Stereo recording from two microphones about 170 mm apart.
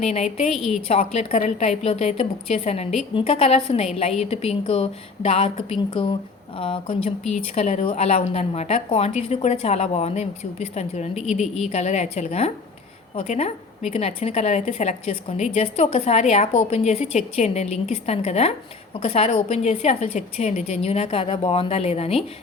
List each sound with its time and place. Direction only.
0.0 s a woman's voice: 40° left (ahead or behind)
0.5 s a woman's voice: centre (ahead or behind)
0.9 s a woman's voice: 35° left (ahead or behind)